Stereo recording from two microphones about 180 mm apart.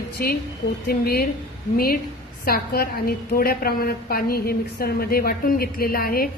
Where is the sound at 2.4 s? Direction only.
60° left (ahead or behind).